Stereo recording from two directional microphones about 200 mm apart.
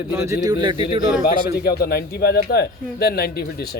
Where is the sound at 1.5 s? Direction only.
50° left (ahead or behind).